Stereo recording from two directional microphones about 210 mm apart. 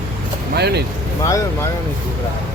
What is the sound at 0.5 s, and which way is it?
Speech, 50° right (ahead or behind).